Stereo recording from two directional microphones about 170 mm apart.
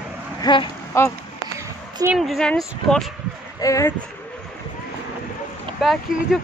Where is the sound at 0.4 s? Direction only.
30° left (ahead or behind).